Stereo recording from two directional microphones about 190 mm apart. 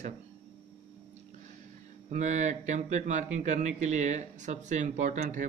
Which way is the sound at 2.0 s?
40° right (ahead or behind).